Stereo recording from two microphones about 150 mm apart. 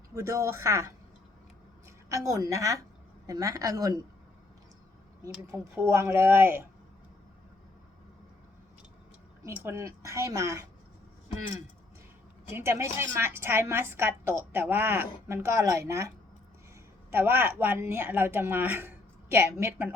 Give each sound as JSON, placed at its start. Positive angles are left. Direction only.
{"t": 0.1, "sound": "speech", "side_deg": -20}
{"t": 2.0, "sound": "speech", "side_deg": -20}
{"t": 5.7, "sound": "a woman's voice", "side_deg": -20}
{"t": 9.6, "sound": "speech", "side_deg": -15}
{"t": 12.5, "sound": "a woman's voice", "side_deg": -15}